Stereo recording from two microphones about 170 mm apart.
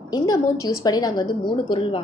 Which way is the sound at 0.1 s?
25° left (ahead or behind).